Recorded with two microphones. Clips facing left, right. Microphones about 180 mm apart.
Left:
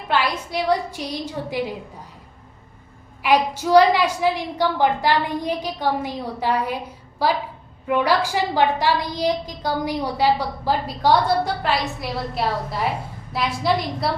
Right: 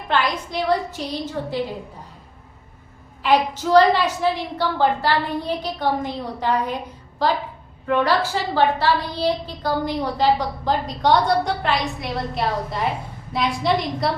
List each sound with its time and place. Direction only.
0.1 s a woman's voice: 10° left (ahead or behind)
3.2 s a woman's voice: 10° left (ahead or behind)